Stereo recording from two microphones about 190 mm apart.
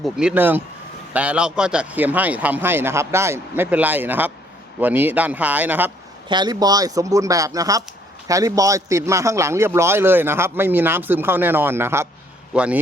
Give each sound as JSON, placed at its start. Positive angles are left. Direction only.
{"t": 0.0, "sound": "a man's voice", "side_deg": -5}
{"t": 6.2, "sound": "a man's voice", "side_deg": -25}